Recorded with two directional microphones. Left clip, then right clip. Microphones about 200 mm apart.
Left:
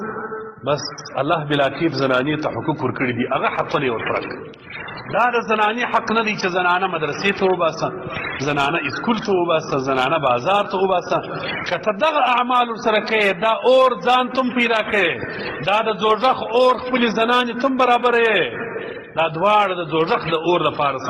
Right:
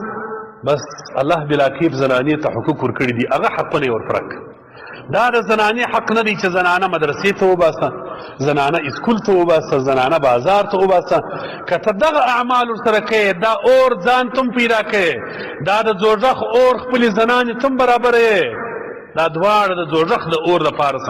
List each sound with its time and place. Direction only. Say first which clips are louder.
0.7 s a man's voice: right 4 dB; 40° right (ahead or behind)